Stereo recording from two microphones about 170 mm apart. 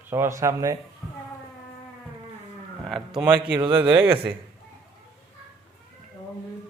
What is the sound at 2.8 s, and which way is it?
Speech, centre (ahead or behind).